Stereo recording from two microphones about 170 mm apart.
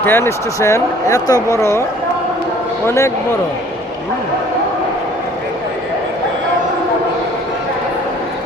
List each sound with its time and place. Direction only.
0.0 s speech: 15° left (ahead or behind)
2.8 s speech: 15° left (ahead or behind)